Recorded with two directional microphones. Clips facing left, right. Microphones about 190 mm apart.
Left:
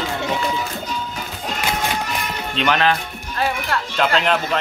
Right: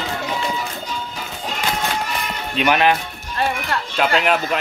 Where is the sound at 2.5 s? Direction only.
10° right (ahead or behind).